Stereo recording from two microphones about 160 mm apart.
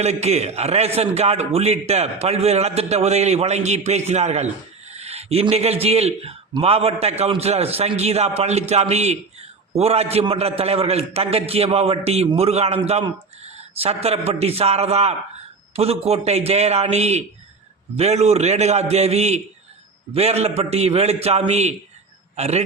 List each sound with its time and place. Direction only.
0.0 s a man's voice: 40° right (ahead or behind)